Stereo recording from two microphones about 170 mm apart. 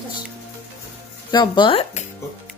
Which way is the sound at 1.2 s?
25° left (ahead or behind).